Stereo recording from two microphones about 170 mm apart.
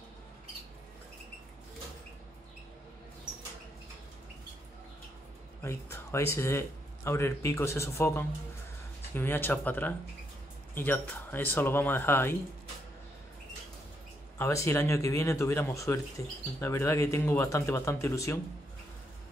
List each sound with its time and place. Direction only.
5.6 s speech: 15° left (ahead or behind)
14.4 s speech: 15° left (ahead or behind)